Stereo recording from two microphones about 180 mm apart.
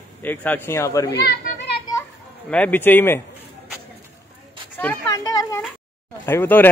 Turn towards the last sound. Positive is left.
turn(degrees=10)  # may be behind; listen again after turning